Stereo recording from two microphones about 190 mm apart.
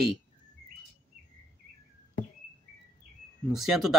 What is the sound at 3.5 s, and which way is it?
Speech, centre (ahead or behind).